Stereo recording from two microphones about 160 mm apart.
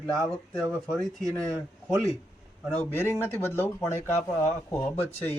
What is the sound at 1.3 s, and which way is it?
Speech, 20° right (ahead or behind).